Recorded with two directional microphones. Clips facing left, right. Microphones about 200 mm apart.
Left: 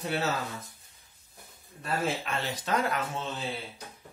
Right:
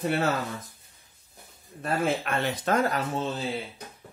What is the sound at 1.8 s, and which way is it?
Speech, 55° right (ahead or behind).